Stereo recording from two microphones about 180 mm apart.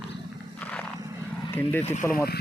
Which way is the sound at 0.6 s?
5° left (ahead or behind).